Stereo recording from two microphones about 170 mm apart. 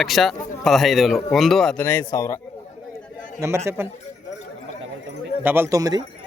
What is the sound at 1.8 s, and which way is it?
Speech, 15° left (ahead or behind).